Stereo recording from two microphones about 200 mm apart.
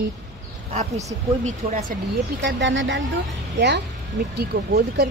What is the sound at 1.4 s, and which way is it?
Speech, 40° right (ahead or behind).